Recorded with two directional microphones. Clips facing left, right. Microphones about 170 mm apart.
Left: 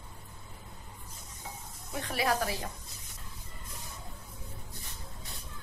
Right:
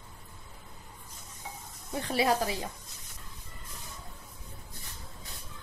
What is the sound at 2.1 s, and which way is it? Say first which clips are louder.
Speech: right 3 dB; 25° right (ahead or behind).